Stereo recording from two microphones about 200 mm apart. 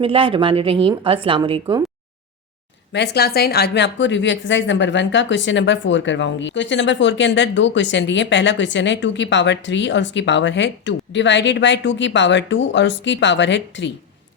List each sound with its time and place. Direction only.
0.0 s a woman's voice: 25° right (ahead or behind)
2.9 s a woman's voice: 55° left (ahead or behind)